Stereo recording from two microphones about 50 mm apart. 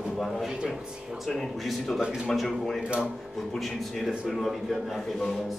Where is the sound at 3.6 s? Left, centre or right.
Centre.